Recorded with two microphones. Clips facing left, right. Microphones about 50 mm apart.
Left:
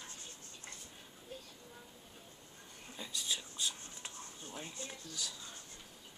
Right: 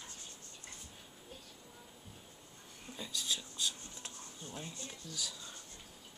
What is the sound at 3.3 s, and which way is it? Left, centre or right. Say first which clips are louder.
Whispering: right 1 dB; centre.